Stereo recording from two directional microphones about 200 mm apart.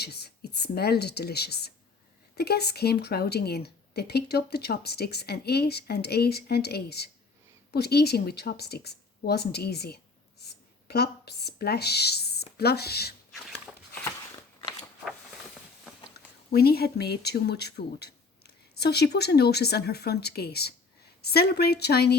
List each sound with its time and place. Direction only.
0.0 s speech: 55° left (ahead or behind)
16.5 s speech: 50° left (ahead or behind)